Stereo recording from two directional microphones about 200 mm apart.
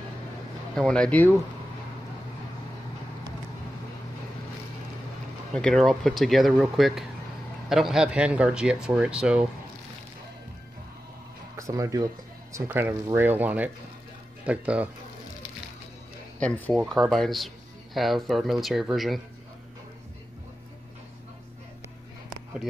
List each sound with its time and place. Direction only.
0.7 s speech: 5° left (ahead or behind)
5.5 s speech: 5° left (ahead or behind)
11.5 s speech: 15° right (ahead or behind)
16.3 s speech: 5° left (ahead or behind)